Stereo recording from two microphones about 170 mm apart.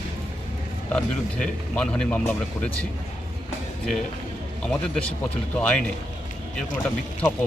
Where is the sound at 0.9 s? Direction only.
5° left (ahead or behind).